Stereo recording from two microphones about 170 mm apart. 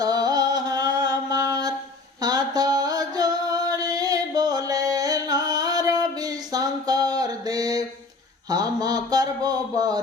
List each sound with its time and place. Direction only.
0.0 s a sound: 20° right (ahead or behind)
2.2 s music: 25° right (ahead or behind)
8.4 s speech: 20° right (ahead or behind)